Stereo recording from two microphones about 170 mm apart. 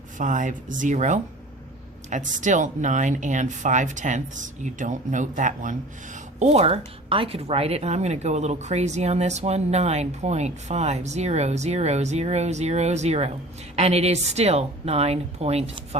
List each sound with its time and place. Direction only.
0.2 s speech: 50° right (ahead or behind)
6.4 s speech: 35° right (ahead or behind)